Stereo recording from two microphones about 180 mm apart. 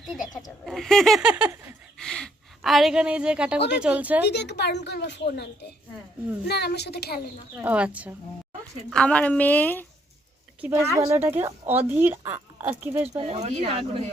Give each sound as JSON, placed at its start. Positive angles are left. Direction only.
{"t": 0.0, "sound": "speech", "side_deg": 0}
{"t": 2.0, "sound": "a woman's voice", "side_deg": 5}
{"t": 4.2, "sound": "speech", "side_deg": 70}
{"t": 6.5, "sound": "a woman's voice", "side_deg": 65}
{"t": 7.5, "sound": "a woman's voice", "side_deg": -5}
{"t": 8.9, "sound": "a woman's voice", "side_deg": 5}
{"t": 10.6, "sound": "a woman's voice", "side_deg": -15}
{"t": 13.1, "sound": "speech", "side_deg": -30}